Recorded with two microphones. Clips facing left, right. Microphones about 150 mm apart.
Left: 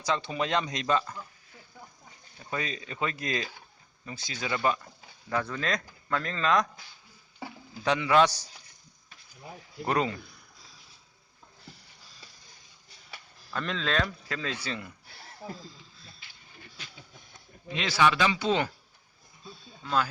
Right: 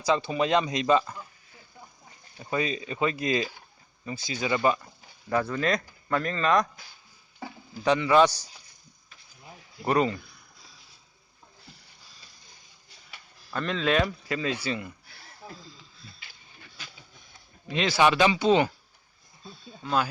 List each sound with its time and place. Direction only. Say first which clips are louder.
0.0 s speech: right 5 dB; 5° right (ahead or behind)
2.4 s speech: right 6 dB; 5° right (ahead or behind)
7.7 s speech: right 3 dB; centre (ahead or behind)
9.8 s speech: right 4 dB; 5° right (ahead or behind)
13.5 s speech: right 5 dB; 5° right (ahead or behind)
17.9 s speech: right 3 dB; 20° right (ahead or behind)
19.8 s speech: right 2 dB; 10° right (ahead or behind)